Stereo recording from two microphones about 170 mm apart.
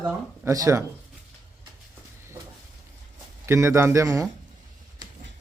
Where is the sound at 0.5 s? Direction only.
20° right (ahead or behind).